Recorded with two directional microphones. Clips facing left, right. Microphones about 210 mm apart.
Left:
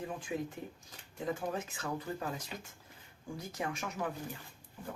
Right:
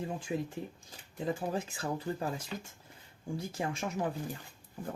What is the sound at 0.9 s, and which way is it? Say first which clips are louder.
Speech: right 2 dB; 30° right (ahead or behind).